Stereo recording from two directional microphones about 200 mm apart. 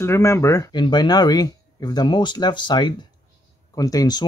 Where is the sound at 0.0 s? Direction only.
15° left (ahead or behind).